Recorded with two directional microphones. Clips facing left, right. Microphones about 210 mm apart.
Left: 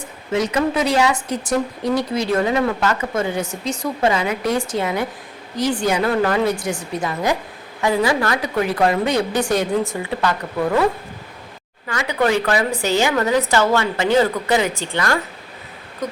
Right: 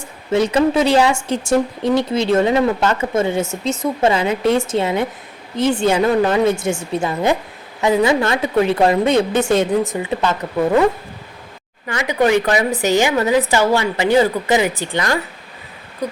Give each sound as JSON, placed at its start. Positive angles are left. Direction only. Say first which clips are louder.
{"t": 0.3, "sound": "speech", "louder": "right 4 dB", "side_deg": -30}
{"t": 11.9, "sound": "a woman's voice", "louder": "right 3 dB", "side_deg": -20}